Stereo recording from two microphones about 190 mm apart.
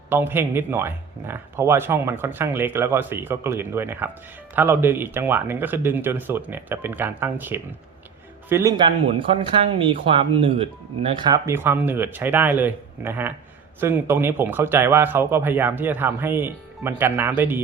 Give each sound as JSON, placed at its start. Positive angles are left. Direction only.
{"t": 0.1, "sound": "speech", "side_deg": -10}